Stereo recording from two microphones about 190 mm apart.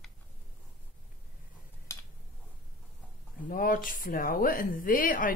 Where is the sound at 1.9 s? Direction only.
15° left (ahead or behind).